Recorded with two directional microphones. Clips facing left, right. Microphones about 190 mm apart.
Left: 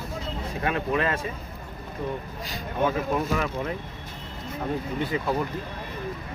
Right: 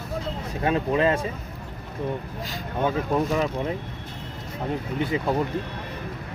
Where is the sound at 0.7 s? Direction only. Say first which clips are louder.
Right 4 dB; 30° right (ahead or behind).